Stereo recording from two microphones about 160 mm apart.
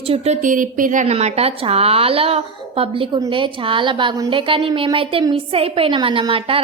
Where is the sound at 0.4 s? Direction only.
55° right (ahead or behind).